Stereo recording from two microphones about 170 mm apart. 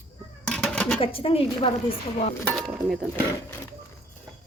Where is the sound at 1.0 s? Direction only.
35° left (ahead or behind).